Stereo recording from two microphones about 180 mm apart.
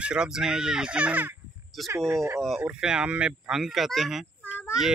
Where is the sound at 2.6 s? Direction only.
5° right (ahead or behind).